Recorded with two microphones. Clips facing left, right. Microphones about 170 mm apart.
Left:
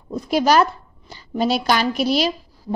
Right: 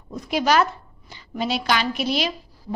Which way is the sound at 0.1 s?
40° left (ahead or behind).